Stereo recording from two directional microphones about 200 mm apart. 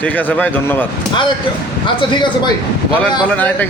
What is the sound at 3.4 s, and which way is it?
Speech, 10° left (ahead or behind).